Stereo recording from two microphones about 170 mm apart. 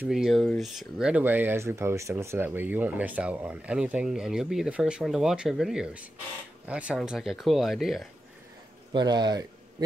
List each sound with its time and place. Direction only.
0.0 s speech: centre (ahead or behind)
8.9 s speech: 25° right (ahead or behind)